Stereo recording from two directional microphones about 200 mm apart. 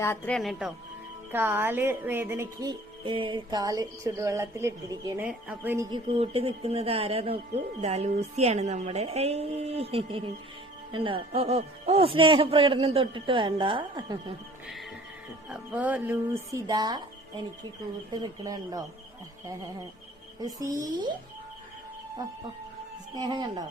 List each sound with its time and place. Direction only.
0.0 s speech: 15° left (ahead or behind)
0.3 s speech: centre (ahead or behind)
1.3 s speech: 10° right (ahead or behind)
6.1 s a man's voice: 30° right (ahead or behind)
15.4 s speech: 5° right (ahead or behind)
18.2 s a man's voice: 20° right (ahead or behind)
20.4 s speech: 15° right (ahead or behind)
23.1 s a man's voice: 20° right (ahead or behind)